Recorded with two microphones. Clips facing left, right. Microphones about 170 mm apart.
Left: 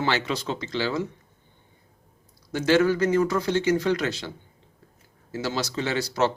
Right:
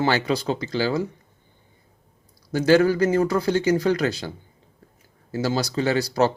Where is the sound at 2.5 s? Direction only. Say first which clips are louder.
Right 3 dB; 40° right (ahead or behind).